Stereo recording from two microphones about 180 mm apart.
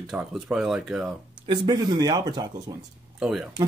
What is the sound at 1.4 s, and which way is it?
Speech, 25° right (ahead or behind).